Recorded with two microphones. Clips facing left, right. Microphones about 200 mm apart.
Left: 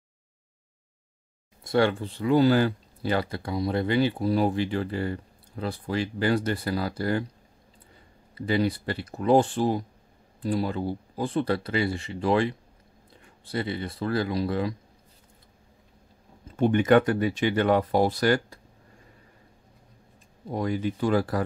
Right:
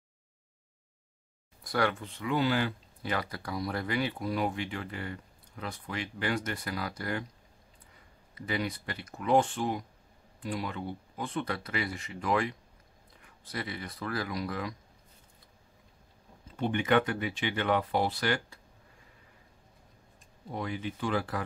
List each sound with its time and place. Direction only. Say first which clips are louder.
1.6 s speech: left 7 dB; 25° left (ahead or behind)
8.4 s speech: left 9 dB; 30° left (ahead or behind)
16.5 s speech: left 7 dB; 45° left (ahead or behind)
20.5 s speech: left 8 dB; 40° left (ahead or behind)